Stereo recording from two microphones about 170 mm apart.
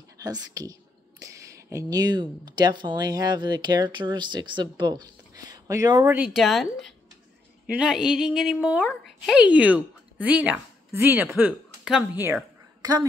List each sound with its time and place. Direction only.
0.2 s speech: 20° right (ahead or behind)
6.1 s a woman's voice: 5° right (ahead or behind)